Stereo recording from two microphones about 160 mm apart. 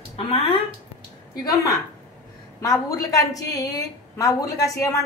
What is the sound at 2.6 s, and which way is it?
A woman's voice, 20° left (ahead or behind).